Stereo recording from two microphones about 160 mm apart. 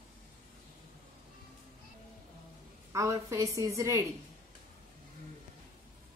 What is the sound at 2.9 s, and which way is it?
A woman's voice, 20° right (ahead or behind).